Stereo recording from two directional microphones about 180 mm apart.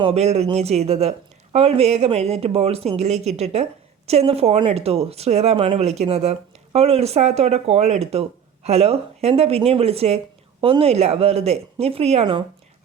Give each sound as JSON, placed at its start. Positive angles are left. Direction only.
{"t": 0.0, "sound": "a woman's voice", "side_deg": -35}